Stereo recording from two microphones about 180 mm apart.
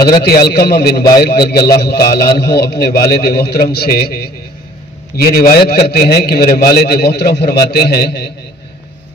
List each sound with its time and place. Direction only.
0.2 s a man's voice: 60° left (ahead or behind)